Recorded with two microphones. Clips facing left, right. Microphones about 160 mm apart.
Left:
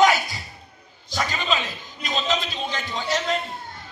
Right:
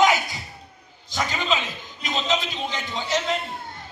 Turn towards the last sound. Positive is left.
turn(degrees=-20)  # may be behind; listen again after turning